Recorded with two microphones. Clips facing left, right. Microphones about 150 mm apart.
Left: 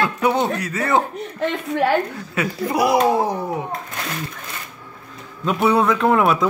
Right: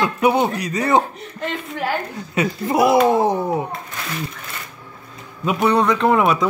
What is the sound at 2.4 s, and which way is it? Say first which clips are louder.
Speech: right 2 dB; 25° right (ahead or behind).